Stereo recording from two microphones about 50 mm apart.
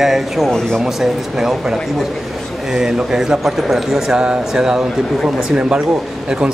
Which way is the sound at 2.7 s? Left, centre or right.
Centre.